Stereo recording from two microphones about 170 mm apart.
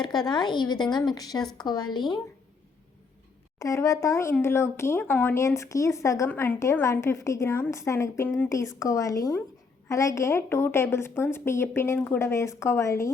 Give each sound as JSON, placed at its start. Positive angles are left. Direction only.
{"t": 0.0, "sound": "a woman's voice", "side_deg": 25}
{"t": 3.6, "sound": "a woman's voice", "side_deg": 20}